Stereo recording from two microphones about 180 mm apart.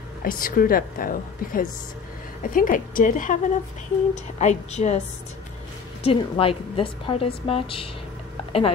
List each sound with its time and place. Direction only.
0.2 s a woman's voice: 50° left (ahead or behind)
6.0 s a woman's voice: 30° left (ahead or behind)